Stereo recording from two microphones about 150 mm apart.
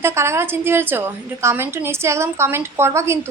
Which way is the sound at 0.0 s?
15° right (ahead or behind).